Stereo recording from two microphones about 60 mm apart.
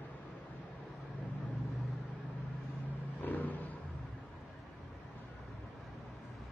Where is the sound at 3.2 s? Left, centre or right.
Left.